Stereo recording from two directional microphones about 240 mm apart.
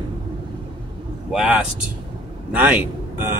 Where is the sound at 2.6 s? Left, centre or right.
Centre.